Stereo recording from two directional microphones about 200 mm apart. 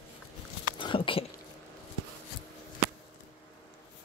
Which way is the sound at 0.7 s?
25° left (ahead or behind).